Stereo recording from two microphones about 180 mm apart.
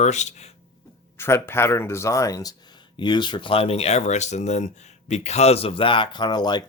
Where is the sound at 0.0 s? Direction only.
40° left (ahead or behind).